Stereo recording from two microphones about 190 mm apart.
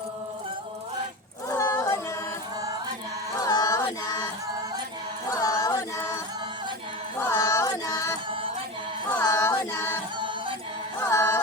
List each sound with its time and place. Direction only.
1.5 s a sound: 15° left (ahead or behind)
3.4 s a sound: 20° left (ahead or behind)
5.3 s music: 20° left (ahead or behind)
7.2 s music: 15° left (ahead or behind)
8.3 s chant: 30° right (ahead or behind)
9.1 s child singing: 15° left (ahead or behind)
11.1 s music: 15° left (ahead or behind)